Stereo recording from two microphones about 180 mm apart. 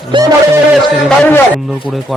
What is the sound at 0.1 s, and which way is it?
Music, 25° right (ahead or behind).